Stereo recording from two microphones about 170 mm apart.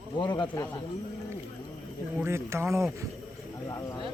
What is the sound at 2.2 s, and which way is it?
Speech, 15° right (ahead or behind).